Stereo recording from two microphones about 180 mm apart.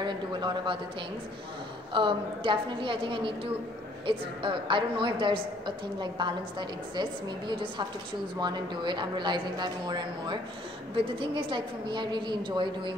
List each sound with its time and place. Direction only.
0.0 s a man's voice: 25° right (ahead or behind)
2.0 s a woman's voice: 30° right (ahead or behind)